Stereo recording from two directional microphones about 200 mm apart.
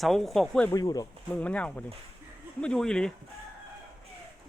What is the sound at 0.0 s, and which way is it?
Speech, centre (ahead or behind).